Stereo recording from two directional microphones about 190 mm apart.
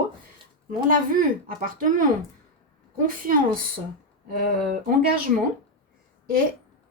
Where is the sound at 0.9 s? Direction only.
45° right (ahead or behind).